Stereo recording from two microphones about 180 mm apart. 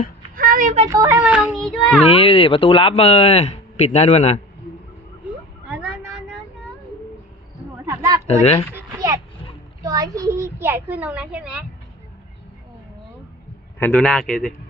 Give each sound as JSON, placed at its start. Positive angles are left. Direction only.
{"t": 0.3, "sound": "a sound", "side_deg": -50}
{"t": 0.9, "sound": "a child's voice", "side_deg": -20}
{"t": 1.3, "sound": "speech", "side_deg": -5}
{"t": 2.0, "sound": "speech", "side_deg": 30}
{"t": 7.9, "sound": "a sound", "side_deg": -20}
{"t": 9.8, "sound": "a child's voice", "side_deg": -20}
{"t": 13.7, "sound": "speech", "side_deg": 5}